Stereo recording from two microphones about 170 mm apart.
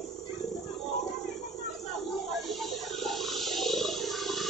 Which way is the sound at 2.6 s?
Centre (ahead or behind).